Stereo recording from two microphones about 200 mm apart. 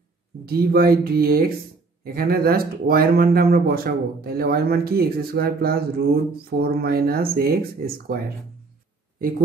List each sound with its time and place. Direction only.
0.5 s speech: 50° right (ahead or behind)